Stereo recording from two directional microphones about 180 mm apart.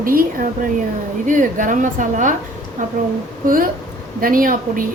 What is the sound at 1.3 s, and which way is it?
A woman's voice, 45° right (ahead or behind).